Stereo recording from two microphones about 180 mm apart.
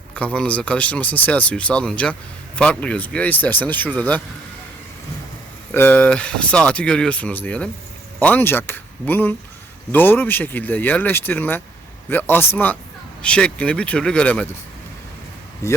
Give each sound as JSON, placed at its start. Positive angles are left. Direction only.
{"t": 0.2, "sound": "speech", "side_deg": 5}
{"t": 5.7, "sound": "speech", "side_deg": 10}
{"t": 15.6, "sound": "speech", "side_deg": 15}